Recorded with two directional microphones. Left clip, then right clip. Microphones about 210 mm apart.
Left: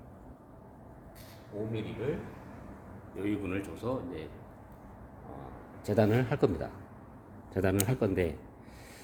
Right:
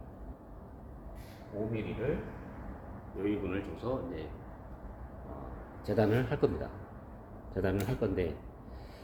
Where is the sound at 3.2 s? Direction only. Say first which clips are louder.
Even; 60° left (ahead or behind).